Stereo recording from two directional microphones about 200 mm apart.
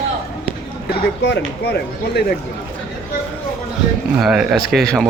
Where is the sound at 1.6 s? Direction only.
55° left (ahead or behind).